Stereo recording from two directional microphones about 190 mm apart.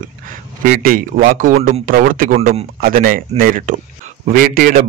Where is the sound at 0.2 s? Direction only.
45° right (ahead or behind).